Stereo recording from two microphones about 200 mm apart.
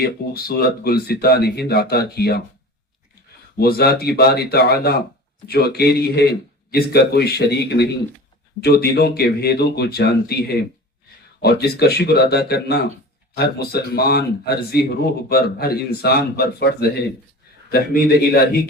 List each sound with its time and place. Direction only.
0.0 s speech: 50° left (ahead or behind)
3.6 s speech: 50° left (ahead or behind)
11.4 s speech: 55° left (ahead or behind)